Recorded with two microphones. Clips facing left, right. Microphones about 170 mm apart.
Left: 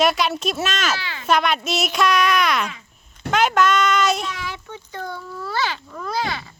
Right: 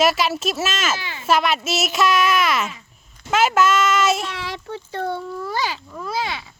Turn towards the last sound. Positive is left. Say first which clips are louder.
# left 1 dB
turn(degrees=0)  # may be behind; listen again after turning